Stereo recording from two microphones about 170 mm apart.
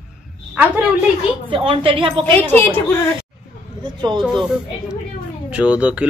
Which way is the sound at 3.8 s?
25° right (ahead or behind).